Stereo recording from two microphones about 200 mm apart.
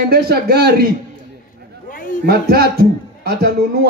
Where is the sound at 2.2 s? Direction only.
50° right (ahead or behind).